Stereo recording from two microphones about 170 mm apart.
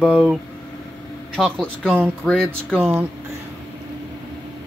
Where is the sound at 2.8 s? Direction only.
10° right (ahead or behind).